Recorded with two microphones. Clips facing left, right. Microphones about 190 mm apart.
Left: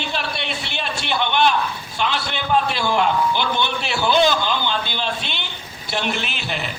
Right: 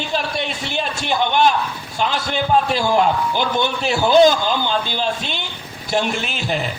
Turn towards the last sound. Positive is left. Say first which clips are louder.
# right 4 dB
turn(degrees=-40)  # may be behind; listen again after turning